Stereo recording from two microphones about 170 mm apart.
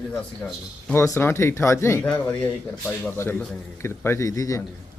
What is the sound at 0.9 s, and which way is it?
A man's voice, 15° left (ahead or behind).